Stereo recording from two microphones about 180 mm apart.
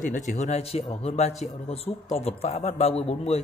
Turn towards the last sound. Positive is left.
turn(degrees=35)  # may be behind; listen again after turning